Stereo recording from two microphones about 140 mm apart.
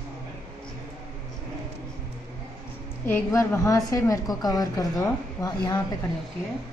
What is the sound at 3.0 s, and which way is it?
A woman's voice, 15° left (ahead or behind).